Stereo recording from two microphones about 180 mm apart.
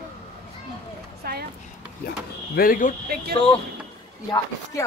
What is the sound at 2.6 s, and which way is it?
Speech, 50° left (ahead or behind).